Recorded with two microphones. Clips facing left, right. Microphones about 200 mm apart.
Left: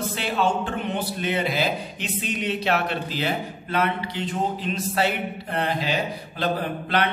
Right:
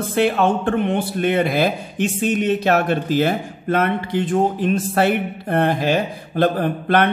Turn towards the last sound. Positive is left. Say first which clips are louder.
# right 7 dB
turn(degrees=-50)  # may be behind; listen again after turning